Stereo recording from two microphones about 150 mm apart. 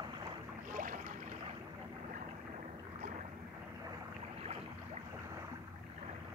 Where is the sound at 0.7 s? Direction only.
60° right (ahead or behind).